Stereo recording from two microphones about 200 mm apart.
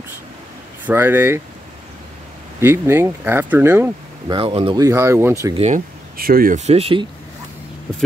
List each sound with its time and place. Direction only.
0.8 s speech: 10° right (ahead or behind)
2.6 s speech: 10° right (ahead or behind)
4.3 s speech: 25° right (ahead or behind)
6.1 s speech: 50° right (ahead or behind); by 7.1 s 30° right (ahead or behind)